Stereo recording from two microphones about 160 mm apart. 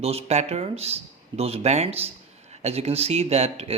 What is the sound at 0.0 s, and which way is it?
Speech, 40° right (ahead or behind).